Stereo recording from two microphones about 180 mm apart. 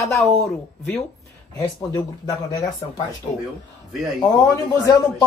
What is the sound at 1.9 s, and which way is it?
Speech, 20° left (ahead or behind).